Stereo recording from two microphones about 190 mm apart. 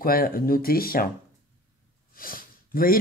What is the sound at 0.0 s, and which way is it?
Speech, 50° left (ahead or behind).